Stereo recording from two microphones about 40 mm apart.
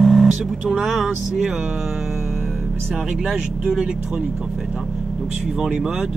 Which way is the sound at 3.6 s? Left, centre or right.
Centre.